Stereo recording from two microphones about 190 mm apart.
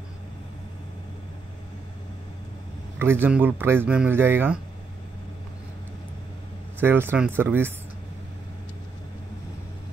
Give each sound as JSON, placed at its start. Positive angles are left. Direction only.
{"t": 3.0, "sound": "speech", "side_deg": -10}
{"t": 6.8, "sound": "speech", "side_deg": -10}